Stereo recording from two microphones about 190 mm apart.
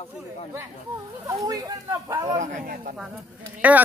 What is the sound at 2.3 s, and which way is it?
Speech, 45° right (ahead or behind).